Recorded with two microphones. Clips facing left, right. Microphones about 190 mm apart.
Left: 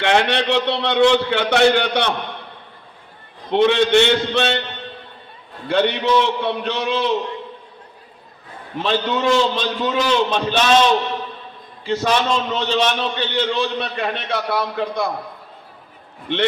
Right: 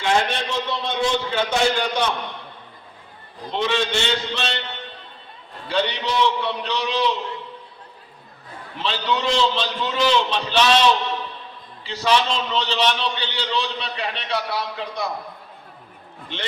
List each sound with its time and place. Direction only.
0.0 s a man's voice: 70° left (ahead or behind)
3.5 s a man's voice: 60° left (ahead or behind)
5.6 s a man's voice: 55° left (ahead or behind)
8.8 s a man's voice: 45° left (ahead or behind)
11.8 s a man's voice: 50° left (ahead or behind)